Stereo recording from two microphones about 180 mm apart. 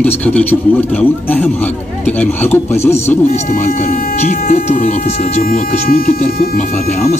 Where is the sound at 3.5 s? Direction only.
40° left (ahead or behind).